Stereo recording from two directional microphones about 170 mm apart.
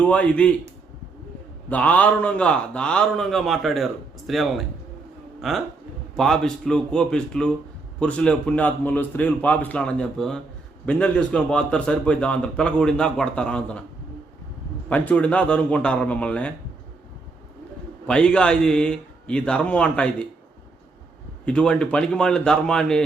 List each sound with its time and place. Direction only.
0.0 s a man's voice: 5° left (ahead or behind)
1.7 s a man's voice: 10° left (ahead or behind)
14.8 s a man's voice: 10° left (ahead or behind)
18.0 s a man's voice: 5° left (ahead or behind)
21.4 s a man's voice: 5° left (ahead or behind)